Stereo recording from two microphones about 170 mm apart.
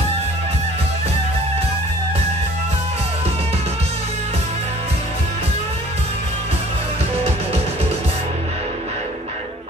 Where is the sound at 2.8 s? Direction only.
40° right (ahead or behind).